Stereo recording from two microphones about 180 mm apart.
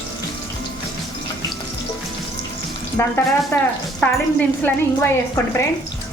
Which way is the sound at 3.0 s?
10° left (ahead or behind).